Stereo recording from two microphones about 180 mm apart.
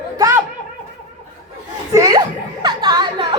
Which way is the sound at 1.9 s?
20° right (ahead or behind).